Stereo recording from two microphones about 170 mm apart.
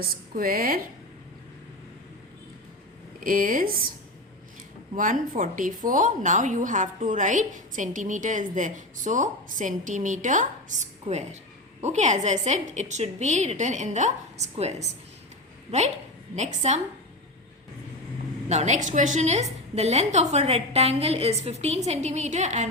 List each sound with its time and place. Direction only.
0.0 s speech: 60° right (ahead or behind)
3.2 s speech: 55° right (ahead or behind)
4.9 s a woman's voice: 50° right (ahead or behind)
18.4 s a woman's voice: 40° right (ahead or behind)